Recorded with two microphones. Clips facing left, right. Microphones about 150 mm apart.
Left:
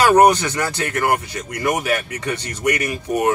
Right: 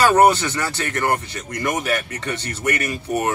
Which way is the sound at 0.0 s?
15° left (ahead or behind).